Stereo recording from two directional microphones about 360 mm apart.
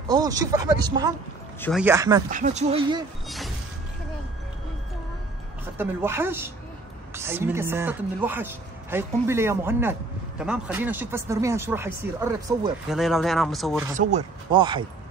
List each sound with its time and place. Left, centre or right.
0.1 s speech: centre
2.2 s speech: right
3.3 s a sound: centre
5.8 s speech: centre
13.9 s speech: centre